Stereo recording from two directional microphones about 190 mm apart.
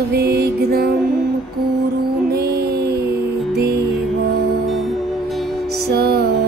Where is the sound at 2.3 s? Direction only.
55° right (ahead or behind).